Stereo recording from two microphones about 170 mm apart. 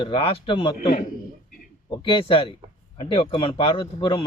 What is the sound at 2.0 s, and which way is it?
A man's voice, 30° left (ahead or behind).